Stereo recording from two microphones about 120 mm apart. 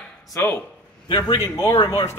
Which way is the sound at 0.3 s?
20° left (ahead or behind).